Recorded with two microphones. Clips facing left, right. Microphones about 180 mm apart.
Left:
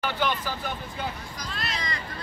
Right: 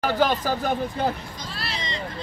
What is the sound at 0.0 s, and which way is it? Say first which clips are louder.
Speech: right 6 dB; 40° right (ahead or behind).